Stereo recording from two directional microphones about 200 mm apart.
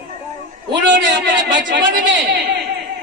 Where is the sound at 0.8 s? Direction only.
60° right (ahead or behind).